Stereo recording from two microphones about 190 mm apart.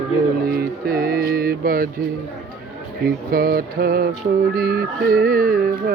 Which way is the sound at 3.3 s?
50° right (ahead or behind).